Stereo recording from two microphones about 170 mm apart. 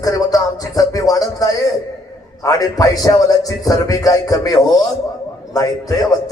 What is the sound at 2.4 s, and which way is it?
A man's voice, 20° left (ahead or behind).